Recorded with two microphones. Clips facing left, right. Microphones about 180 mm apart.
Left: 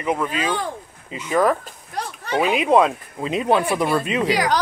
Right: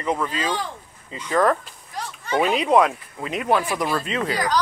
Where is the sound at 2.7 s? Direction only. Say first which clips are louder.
Left 1 dB; 25° left (ahead or behind).